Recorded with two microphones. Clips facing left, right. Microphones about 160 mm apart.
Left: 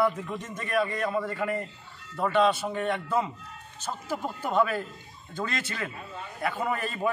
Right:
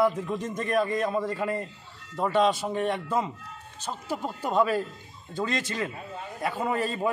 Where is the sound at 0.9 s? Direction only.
25° right (ahead or behind).